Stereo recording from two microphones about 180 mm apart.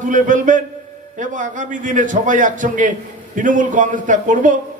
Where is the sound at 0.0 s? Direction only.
45° right (ahead or behind).